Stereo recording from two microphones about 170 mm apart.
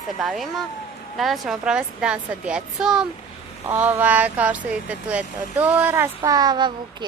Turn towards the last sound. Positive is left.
turn(degrees=-25)  # may be behind; listen again after turning